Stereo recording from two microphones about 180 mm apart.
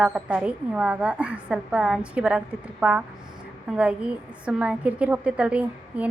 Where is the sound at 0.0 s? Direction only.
5° right (ahead or behind).